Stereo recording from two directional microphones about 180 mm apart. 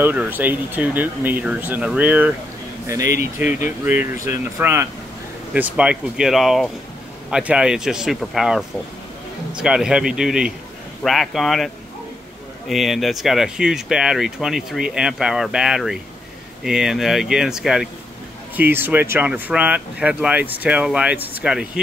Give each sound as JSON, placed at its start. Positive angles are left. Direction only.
{"t": 0.0, "sound": "speech", "side_deg": -10}
{"t": 3.4, "sound": "speech", "side_deg": 45}
{"t": 3.8, "sound": "speech", "side_deg": -10}